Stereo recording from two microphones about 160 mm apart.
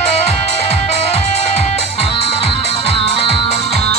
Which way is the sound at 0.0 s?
40° left (ahead or behind).